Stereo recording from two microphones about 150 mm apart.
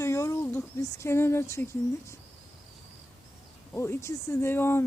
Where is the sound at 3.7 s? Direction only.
15° left (ahead or behind).